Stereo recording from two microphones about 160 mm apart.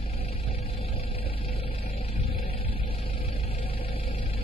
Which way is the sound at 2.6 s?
35° left (ahead or behind).